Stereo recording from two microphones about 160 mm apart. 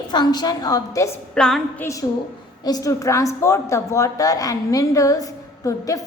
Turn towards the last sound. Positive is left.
turn(degrees=20)  # may be behind; listen again after turning